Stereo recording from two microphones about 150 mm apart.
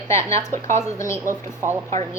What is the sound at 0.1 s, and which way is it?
A woman's voice, 20° left (ahead or behind).